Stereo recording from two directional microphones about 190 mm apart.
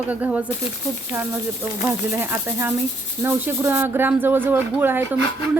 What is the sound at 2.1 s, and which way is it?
Speech, 10° right (ahead or behind).